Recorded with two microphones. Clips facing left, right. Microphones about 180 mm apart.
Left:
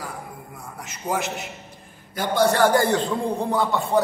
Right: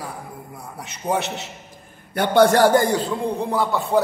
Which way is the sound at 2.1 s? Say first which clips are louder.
Right 5 dB; 65° right (ahead or behind).